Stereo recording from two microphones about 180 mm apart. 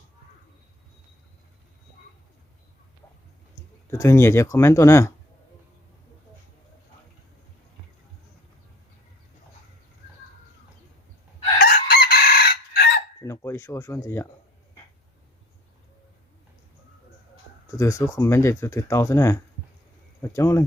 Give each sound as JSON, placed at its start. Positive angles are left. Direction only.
{"t": 3.8, "sound": "speech", "side_deg": 15}
{"t": 11.6, "sound": "chicken", "side_deg": 60}
{"t": 13.2, "sound": "speech", "side_deg": 15}
{"t": 17.7, "sound": "speech", "side_deg": 15}